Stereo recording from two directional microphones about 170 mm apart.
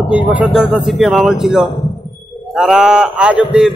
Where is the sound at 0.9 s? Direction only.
5° right (ahead or behind).